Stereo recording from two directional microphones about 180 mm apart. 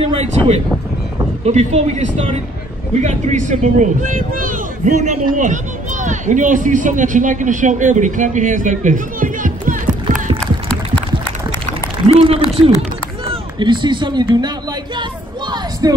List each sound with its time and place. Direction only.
0.0 s speech: 30° right (ahead or behind); by 10.3 s 45° right (ahead or behind)
10.4 s a sound: 5° left (ahead or behind)
12.1 s a man's voice: 30° right (ahead or behind)
15.8 s speech: 20° right (ahead or behind)